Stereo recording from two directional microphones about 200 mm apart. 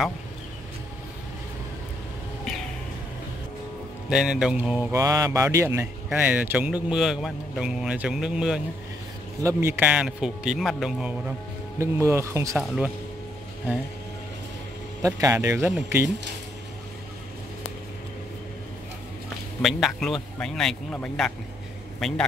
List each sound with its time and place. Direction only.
4.1 s speech: centre (ahead or behind)
4.9 s speech: 15° right (ahead or behind)
9.4 s speech: 15° right (ahead or behind)
15.0 s speech: 15° right (ahead or behind)
19.6 s speech: centre (ahead or behind)